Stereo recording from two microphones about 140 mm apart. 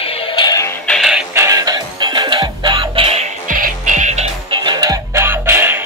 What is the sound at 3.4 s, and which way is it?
Music, 70° right (ahead or behind).